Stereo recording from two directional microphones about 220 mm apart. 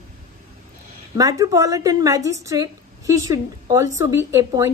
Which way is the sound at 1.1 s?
15° right (ahead or behind).